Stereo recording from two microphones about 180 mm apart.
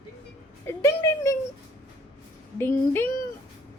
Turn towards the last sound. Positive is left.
turn(degrees=10)  # may be behind; listen again after turning